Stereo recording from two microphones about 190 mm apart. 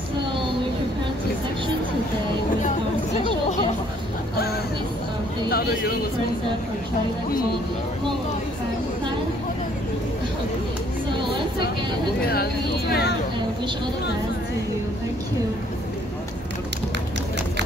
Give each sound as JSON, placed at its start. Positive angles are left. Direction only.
{"t": 12.3, "sound": "speech", "side_deg": 55}